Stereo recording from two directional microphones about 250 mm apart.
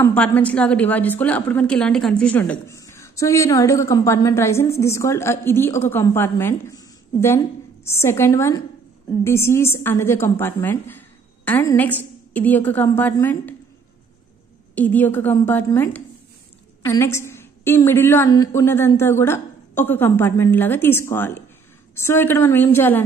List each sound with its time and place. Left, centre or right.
0.0 s a woman's voice: centre
14.8 s a woman's voice: centre